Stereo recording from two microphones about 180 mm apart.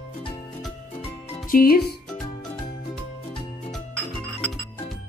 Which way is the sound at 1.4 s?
55° left (ahead or behind).